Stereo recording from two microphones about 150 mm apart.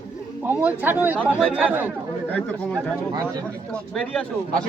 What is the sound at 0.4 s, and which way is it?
Speech, 10° right (ahead or behind).